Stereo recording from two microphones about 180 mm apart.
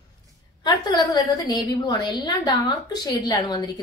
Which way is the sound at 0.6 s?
20° left (ahead or behind).